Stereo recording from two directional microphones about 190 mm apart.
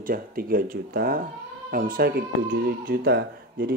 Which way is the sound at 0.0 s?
50° right (ahead or behind).